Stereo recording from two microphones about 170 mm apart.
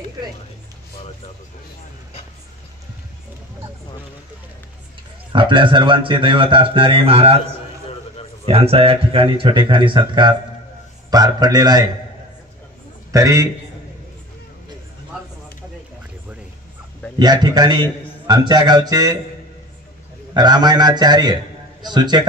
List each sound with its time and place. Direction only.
5.3 s speech: 30° right (ahead or behind)
8.5 s speech: 35° right (ahead or behind)
13.1 s speech: 20° right (ahead or behind)
17.2 s speech: 25° right (ahead or behind)
20.3 s speech: 25° right (ahead or behind)